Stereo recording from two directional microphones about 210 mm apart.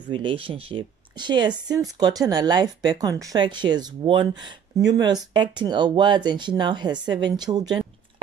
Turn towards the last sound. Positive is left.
turn(degrees=-20)  # may be behind; listen again after turning